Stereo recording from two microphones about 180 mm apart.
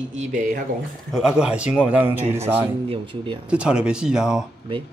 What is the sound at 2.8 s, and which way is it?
Speech, 30° right (ahead or behind).